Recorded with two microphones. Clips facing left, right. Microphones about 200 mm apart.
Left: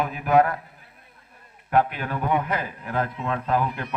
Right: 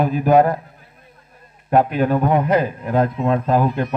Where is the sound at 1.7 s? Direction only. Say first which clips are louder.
Right 7 dB; 40° right (ahead or behind).